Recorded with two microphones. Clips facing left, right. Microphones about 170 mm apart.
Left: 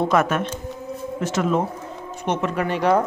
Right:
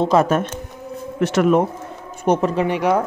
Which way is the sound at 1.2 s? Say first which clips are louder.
Right 6 dB; 65° right (ahead or behind).